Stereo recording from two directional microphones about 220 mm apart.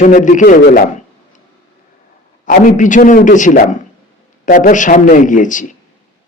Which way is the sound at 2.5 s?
35° left (ahead or behind).